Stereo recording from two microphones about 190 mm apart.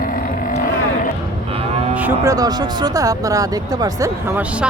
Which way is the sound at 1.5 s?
30° right (ahead or behind).